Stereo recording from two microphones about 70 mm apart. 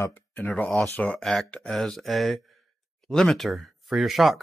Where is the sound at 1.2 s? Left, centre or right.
Centre.